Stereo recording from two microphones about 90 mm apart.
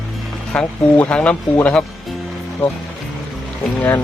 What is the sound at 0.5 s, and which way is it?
Speech, 10° left (ahead or behind).